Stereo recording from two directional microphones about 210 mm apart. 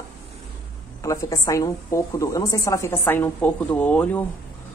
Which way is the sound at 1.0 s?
15° left (ahead or behind).